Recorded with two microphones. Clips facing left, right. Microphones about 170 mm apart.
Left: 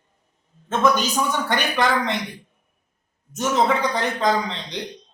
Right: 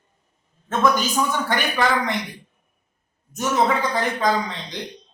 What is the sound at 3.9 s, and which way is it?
Speech, 20° left (ahead or behind).